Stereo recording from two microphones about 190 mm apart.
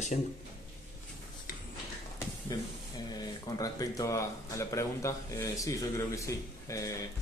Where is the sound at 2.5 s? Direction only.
20° left (ahead or behind).